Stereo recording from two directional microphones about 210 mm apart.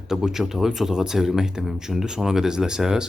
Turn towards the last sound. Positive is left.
turn(degrees=-5)  # may be behind; listen again after turning